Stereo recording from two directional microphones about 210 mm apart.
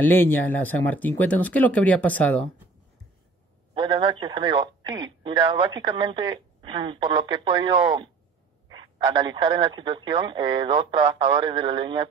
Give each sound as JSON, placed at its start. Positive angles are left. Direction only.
{"t": 0.0, "sound": "speech", "side_deg": 10}
{"t": 3.7, "sound": "speech", "side_deg": -20}